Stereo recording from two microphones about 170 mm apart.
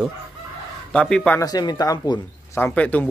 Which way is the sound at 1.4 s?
20° left (ahead or behind).